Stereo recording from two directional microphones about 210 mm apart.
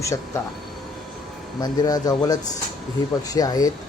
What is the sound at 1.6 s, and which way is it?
A man's voice, 20° left (ahead or behind).